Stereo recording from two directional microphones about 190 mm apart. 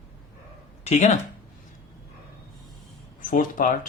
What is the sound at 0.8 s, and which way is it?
Speech, 35° left (ahead or behind).